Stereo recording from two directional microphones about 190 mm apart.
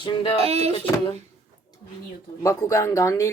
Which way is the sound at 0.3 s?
30° right (ahead or behind).